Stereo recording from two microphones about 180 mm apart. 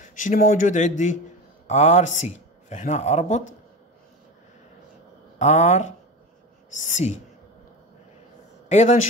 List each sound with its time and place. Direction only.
0.0 s speech: 45° left (ahead or behind)
5.4 s speech: 40° left (ahead or behind)
8.6 s a man's voice: 40° left (ahead or behind)